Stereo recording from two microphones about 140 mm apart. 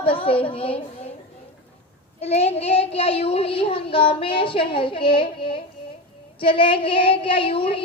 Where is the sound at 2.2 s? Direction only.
50° left (ahead or behind).